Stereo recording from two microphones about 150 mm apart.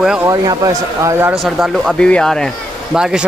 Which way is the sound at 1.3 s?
Centre (ahead or behind).